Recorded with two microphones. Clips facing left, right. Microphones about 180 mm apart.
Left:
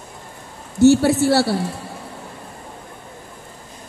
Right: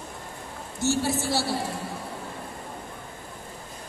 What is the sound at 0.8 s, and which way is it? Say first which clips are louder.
Speech: left 13 dB; 70° left (ahead or behind).